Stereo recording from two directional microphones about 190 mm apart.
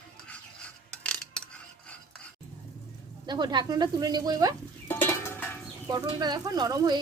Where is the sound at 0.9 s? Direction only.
5° left (ahead or behind).